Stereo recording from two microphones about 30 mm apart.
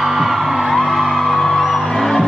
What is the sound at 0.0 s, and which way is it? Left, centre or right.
Music, centre.